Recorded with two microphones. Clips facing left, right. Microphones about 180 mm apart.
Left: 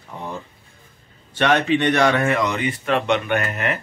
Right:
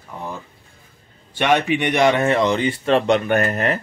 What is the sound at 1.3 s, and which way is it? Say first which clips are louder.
Speech: even; 15° right (ahead or behind).